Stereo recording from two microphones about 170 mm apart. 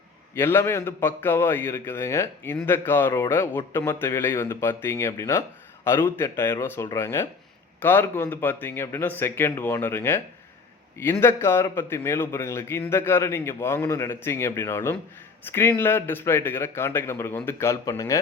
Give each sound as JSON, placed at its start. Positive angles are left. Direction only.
{"t": 0.3, "sound": "a man's voice", "side_deg": 15}